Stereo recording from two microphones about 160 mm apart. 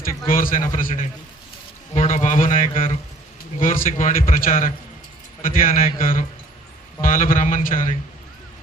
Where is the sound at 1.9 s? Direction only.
45° left (ahead or behind).